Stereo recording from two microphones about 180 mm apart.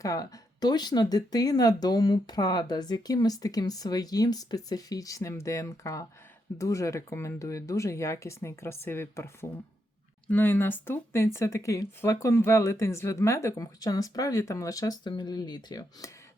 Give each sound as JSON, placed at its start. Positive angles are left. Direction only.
{"t": 0.0, "sound": "speech", "side_deg": 20}